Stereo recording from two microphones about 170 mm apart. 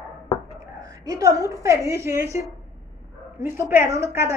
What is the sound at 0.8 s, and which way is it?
A woman's voice, 20° right (ahead or behind).